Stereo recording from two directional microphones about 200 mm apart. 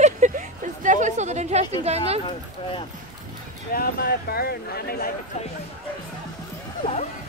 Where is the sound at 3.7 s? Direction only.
50° left (ahead or behind).